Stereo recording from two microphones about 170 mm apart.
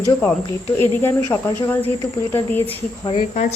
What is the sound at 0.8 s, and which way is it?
A woman's voice, 15° left (ahead or behind).